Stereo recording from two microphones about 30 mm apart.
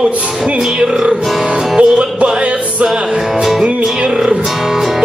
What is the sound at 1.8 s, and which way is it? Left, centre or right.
Music, right.